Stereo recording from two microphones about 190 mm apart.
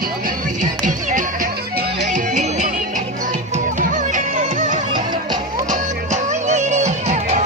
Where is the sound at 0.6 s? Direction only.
45° right (ahead or behind).